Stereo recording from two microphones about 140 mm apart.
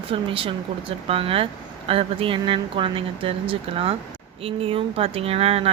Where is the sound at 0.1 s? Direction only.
40° right (ahead or behind).